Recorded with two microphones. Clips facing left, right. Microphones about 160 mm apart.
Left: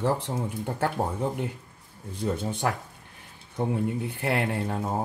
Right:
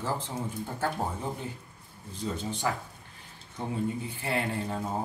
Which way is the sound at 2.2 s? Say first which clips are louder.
Left 4 dB; 60° left (ahead or behind).